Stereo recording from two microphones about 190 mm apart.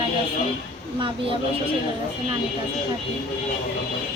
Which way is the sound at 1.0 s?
25° right (ahead or behind).